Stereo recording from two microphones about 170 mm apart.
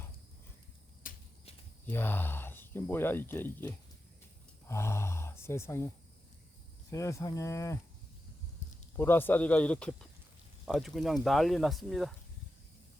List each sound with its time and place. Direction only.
1.0 s a sound: 55° left (ahead or behind)
1.9 s speech: 10° left (ahead or behind)
6.9 s speech: 20° left (ahead or behind)
9.0 s speech: 10° left (ahead or behind)